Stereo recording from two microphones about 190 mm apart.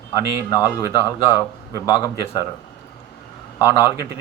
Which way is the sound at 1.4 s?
20° left (ahead or behind).